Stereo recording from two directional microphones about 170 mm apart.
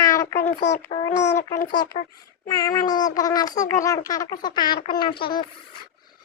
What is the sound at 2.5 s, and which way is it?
Speech, 20° left (ahead or behind).